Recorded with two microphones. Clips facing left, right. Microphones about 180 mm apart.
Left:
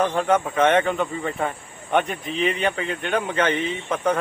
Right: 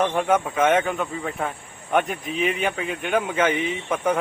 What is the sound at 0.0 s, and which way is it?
Speech, 10° right (ahead or behind).